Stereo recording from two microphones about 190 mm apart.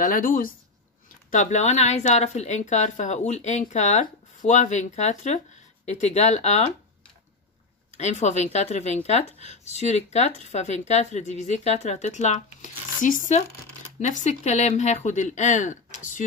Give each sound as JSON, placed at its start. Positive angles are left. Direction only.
{"t": 0.0, "sound": "speech", "side_deg": 45}
{"t": 8.0, "sound": "speech", "side_deg": 35}